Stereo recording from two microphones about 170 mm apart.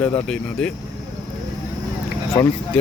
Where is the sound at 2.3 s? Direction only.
20° left (ahead or behind).